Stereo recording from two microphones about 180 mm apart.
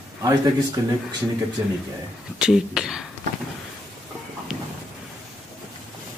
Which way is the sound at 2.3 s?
5° right (ahead or behind).